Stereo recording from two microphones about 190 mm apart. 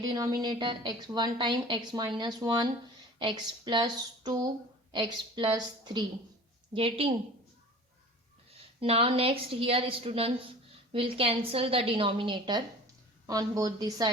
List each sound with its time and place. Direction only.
0.0 s a woman's voice: 20° right (ahead or behind)
8.8 s a woman's voice: 30° right (ahead or behind)